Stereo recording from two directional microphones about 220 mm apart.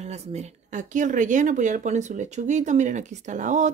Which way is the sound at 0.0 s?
30° right (ahead or behind).